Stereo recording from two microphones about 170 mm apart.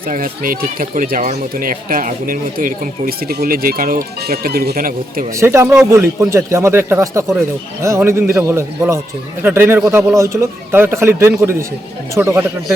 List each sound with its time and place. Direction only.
0.1 s speech: 55° right (ahead or behind)
5.4 s a man's voice: 15° right (ahead or behind)